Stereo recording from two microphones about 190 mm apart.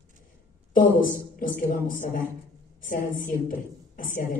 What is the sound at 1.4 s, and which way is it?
Speech, 45° left (ahead or behind).